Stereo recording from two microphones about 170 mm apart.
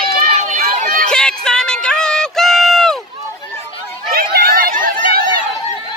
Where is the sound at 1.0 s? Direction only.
5° left (ahead or behind).